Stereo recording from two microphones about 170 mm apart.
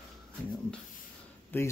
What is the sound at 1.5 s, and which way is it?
Speech, 10° left (ahead or behind).